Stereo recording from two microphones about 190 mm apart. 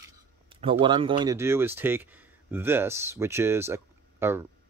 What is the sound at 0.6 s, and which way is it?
Speech, 25° right (ahead or behind).